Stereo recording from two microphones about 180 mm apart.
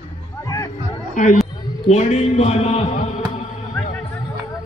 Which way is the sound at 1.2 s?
45° left (ahead or behind).